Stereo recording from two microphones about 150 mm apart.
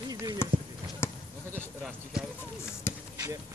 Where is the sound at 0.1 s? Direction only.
25° right (ahead or behind).